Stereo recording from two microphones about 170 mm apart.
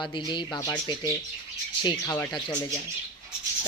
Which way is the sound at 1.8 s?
25° left (ahead or behind).